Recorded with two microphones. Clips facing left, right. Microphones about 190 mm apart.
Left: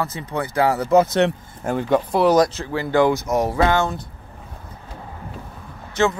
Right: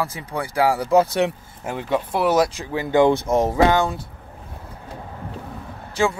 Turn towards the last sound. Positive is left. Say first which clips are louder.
# left 1 dB
turn(degrees=-10)  # may be behind; listen again after turning